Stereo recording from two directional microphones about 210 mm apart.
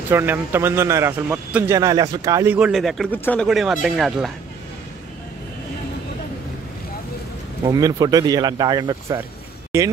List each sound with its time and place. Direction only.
0.1 s speech: 10° right (ahead or behind)
7.6 s speech: 20° right (ahead or behind)